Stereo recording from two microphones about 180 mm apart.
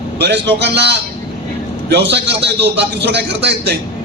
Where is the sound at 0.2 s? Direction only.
70° right (ahead or behind).